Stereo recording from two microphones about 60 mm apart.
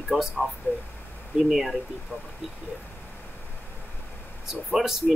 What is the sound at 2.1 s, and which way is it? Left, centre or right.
Speech, left.